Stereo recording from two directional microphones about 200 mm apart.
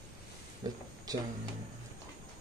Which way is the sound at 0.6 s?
20° right (ahead or behind).